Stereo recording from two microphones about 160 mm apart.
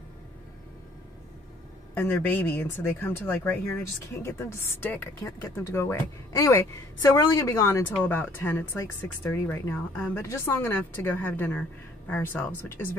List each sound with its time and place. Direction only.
2.0 s speech: 10° left (ahead or behind)